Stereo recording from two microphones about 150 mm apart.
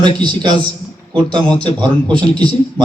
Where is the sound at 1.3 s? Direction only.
5° left (ahead or behind).